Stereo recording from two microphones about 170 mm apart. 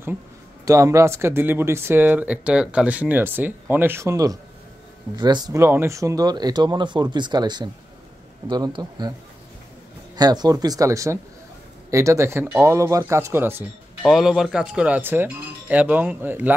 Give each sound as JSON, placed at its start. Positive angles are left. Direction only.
{"t": 0.7, "sound": "speech", "side_deg": -20}
{"t": 10.1, "sound": "speech", "side_deg": -25}
{"t": 14.0, "sound": "speech", "side_deg": 0}